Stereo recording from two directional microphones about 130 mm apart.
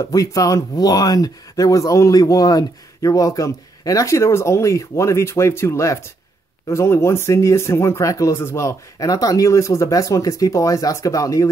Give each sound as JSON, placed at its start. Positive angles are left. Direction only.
{"t": 0.0, "sound": "speech", "side_deg": 25}